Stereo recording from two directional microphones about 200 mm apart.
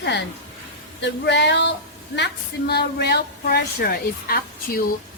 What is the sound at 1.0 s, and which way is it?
A woman's voice, 60° left (ahead or behind).